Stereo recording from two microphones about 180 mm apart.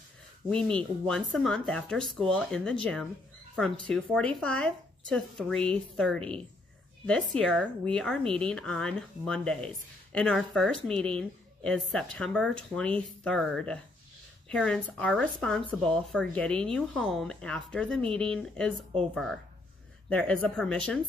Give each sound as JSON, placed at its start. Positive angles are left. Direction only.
{"t": 0.5, "sound": "speech", "side_deg": 5}
{"t": 20.1, "sound": "speech", "side_deg": 5}